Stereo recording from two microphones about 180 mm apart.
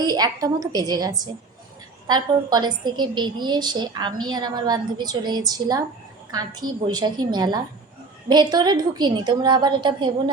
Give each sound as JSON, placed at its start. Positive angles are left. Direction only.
{"t": 0.0, "sound": "a woman's voice", "side_deg": -20}